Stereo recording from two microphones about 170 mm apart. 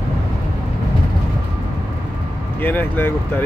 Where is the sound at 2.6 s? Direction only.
10° left (ahead or behind).